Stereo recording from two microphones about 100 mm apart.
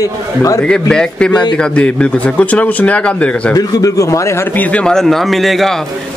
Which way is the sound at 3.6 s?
35° left (ahead or behind).